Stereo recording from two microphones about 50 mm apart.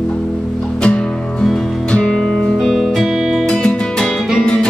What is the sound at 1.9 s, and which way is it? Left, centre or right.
Music, centre.